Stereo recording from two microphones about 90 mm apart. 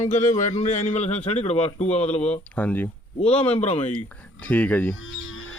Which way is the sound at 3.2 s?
80° left.